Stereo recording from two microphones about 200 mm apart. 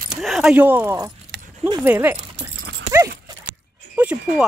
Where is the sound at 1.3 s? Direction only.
60° right (ahead or behind).